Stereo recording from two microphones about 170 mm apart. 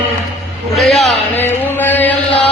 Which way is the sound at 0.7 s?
Centre (ahead or behind).